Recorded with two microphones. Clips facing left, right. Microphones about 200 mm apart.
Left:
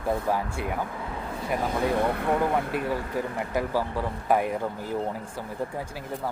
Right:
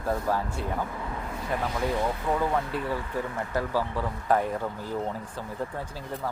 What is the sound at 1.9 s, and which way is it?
Speech, 60° left (ahead or behind).